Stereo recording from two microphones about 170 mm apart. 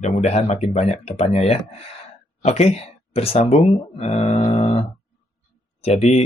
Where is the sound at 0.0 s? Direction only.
40° left (ahead or behind).